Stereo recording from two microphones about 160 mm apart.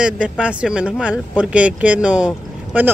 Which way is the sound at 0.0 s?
5° right (ahead or behind).